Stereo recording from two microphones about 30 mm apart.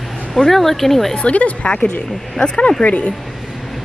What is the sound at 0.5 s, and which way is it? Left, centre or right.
Speech, centre.